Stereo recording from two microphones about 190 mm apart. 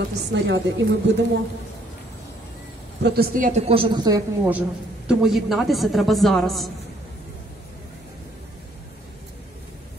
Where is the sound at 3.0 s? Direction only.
55° right (ahead or behind); by 4.2 s 20° right (ahead or behind).